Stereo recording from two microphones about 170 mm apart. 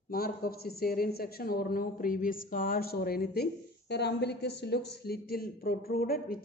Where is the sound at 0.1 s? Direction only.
60° left (ahead or behind).